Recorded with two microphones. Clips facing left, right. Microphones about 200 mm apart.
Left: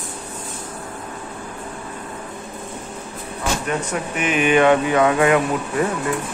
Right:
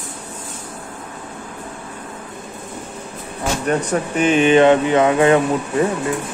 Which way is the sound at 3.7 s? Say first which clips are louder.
Right 5 dB; 35° right (ahead or behind).